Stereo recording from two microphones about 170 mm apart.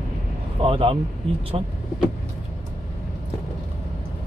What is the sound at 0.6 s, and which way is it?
Speech, 30° right (ahead or behind).